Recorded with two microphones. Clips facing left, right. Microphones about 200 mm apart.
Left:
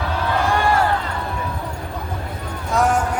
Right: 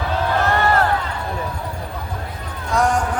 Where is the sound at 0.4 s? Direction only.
10° left (ahead or behind).